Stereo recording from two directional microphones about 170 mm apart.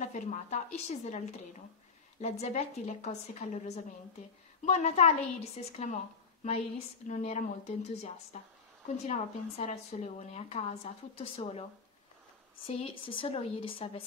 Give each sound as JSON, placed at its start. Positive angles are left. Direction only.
{"t": 0.0, "sound": "a woman's voice", "side_deg": 45}
{"t": 2.2, "sound": "a woman's voice", "side_deg": 40}
{"t": 7.1, "sound": "a woman's voice", "side_deg": 40}
{"t": 12.6, "sound": "a woman's voice", "side_deg": 35}